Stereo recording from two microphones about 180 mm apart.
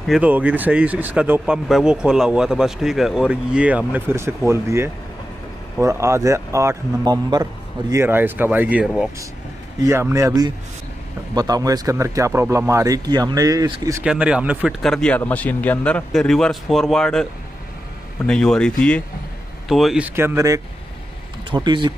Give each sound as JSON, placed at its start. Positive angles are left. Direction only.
{"t": 0.0, "sound": "speech", "side_deg": -5}
{"t": 9.8, "sound": "speech", "side_deg": -15}
{"t": 14.0, "sound": "speech", "side_deg": -5}
{"t": 20.2, "sound": "speech", "side_deg": -15}